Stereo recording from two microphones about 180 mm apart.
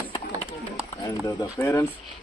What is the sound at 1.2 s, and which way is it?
Speech, 15° left (ahead or behind).